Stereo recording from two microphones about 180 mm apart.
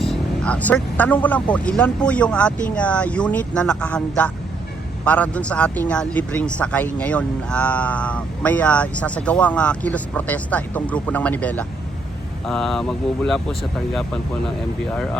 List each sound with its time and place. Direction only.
0.0 s a man's voice: 5° left (ahead or behind)